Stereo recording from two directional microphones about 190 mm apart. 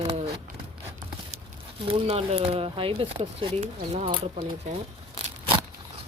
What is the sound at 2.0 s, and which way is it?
Speech, 30° right (ahead or behind).